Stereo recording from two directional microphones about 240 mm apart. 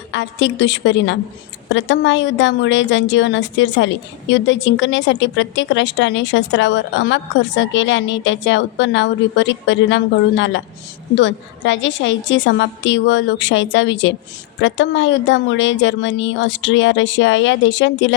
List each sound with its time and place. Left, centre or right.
0.1 s a woman's voice: left